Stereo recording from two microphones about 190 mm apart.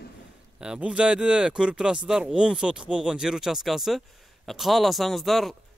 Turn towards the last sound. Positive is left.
turn(degrees=0)  # may be behind; listen again after turning